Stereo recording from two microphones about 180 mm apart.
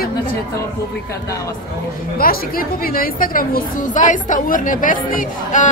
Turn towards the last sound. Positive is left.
turn(degrees=45)  # may be behind; listen again after turning